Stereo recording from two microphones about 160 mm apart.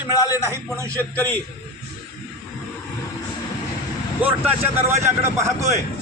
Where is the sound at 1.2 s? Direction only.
10° left (ahead or behind).